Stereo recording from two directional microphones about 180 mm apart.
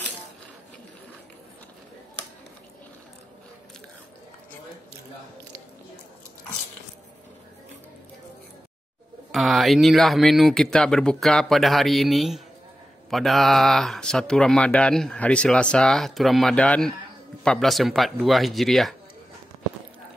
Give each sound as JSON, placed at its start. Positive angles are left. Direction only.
{"t": 9.3, "sound": "speech", "side_deg": 0}